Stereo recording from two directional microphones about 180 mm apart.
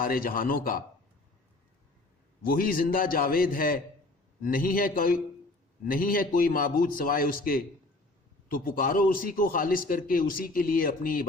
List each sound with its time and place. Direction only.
0.0 s a man's voice: 55° left (ahead or behind)
2.4 s a man's voice: 55° left (ahead or behind)